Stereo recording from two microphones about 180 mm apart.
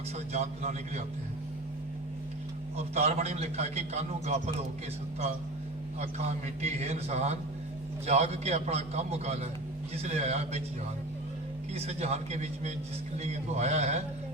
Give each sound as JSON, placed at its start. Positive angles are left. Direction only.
{"t": 0.3, "sound": "a man's voice", "side_deg": -40}
{"t": 2.7, "sound": "a man's voice", "side_deg": -35}
{"t": 6.0, "sound": "a man's voice", "side_deg": -35}
{"t": 11.7, "sound": "a man's voice", "side_deg": -35}